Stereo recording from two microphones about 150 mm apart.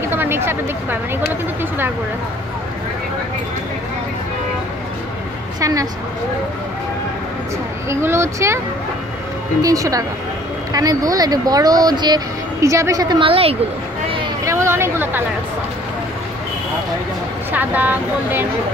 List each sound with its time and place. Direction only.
0.1 s speech: 15° right (ahead or behind)
7.9 s speech: 15° right (ahead or behind)
9.6 s speech: 20° right (ahead or behind); by 13.6 s 40° right (ahead or behind)
14.4 s a sound: 20° right (ahead or behind)
17.5 s speech: 10° right (ahead or behind)